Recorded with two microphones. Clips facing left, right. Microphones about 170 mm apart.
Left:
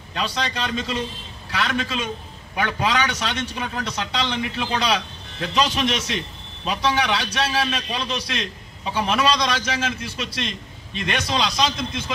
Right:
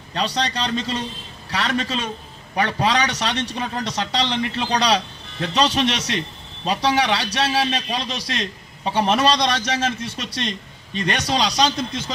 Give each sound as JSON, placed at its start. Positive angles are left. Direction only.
{"t": 0.1, "sound": "a man's voice", "side_deg": -35}